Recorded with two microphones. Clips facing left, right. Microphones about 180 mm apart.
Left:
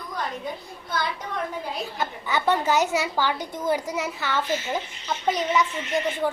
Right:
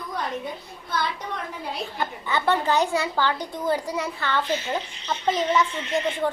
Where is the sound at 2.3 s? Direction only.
15° left (ahead or behind).